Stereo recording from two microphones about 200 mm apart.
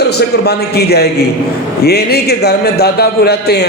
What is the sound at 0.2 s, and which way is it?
A man's voice, 55° left (ahead or behind).